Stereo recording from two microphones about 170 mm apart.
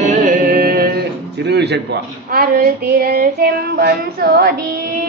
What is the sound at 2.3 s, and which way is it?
Child singing, 65° right (ahead or behind).